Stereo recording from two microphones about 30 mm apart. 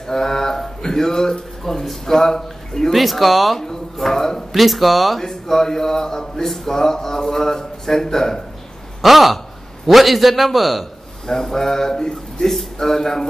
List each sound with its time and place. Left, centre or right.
0.0 s a sound: centre
0.8 s a man's voice: centre
2.9 s a man's voice: centre
3.5 s speech: centre
4.5 s a man's voice: centre
5.2 s a man's voice: centre
9.0 s a man's voice: centre
11.2 s a man's voice: centre